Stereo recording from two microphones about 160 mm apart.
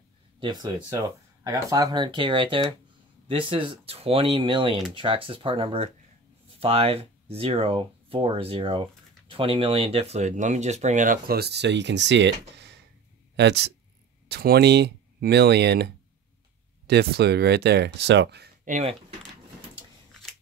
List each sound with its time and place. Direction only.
0.4 s speech: 25° right (ahead or behind); by 18.5 s 90° right
18.7 s speech: 45° right (ahead or behind)